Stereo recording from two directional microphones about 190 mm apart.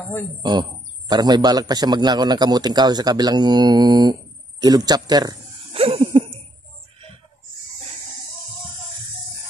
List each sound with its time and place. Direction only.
0.4 s a man's voice: 25° right (ahead or behind)